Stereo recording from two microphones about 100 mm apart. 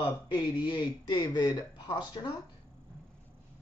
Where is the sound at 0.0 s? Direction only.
45° left (ahead or behind).